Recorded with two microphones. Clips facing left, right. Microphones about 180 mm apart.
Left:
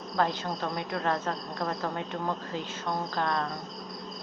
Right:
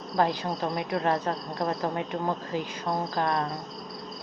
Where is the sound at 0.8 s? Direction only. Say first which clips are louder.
Right 4 dB; 15° right (ahead or behind).